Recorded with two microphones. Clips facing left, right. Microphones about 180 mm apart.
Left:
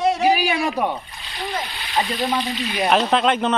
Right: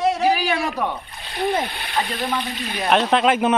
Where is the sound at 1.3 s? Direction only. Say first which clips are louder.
Right 6 dB; 55° right (ahead or behind).